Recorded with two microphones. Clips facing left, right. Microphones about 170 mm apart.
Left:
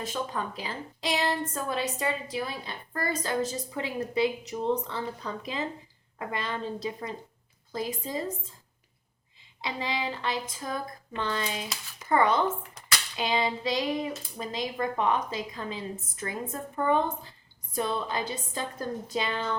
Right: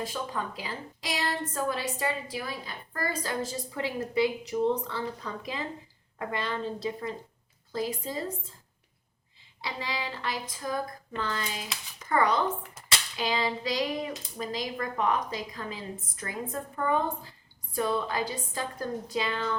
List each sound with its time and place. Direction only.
0.0 s a woman's voice: 25° left (ahead or behind)
9.6 s a woman's voice: 20° left (ahead or behind)